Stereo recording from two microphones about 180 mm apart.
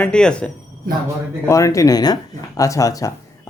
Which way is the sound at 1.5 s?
15° left (ahead or behind).